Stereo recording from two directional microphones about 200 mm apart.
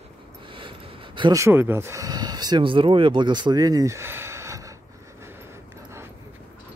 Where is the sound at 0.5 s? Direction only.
25° right (ahead or behind).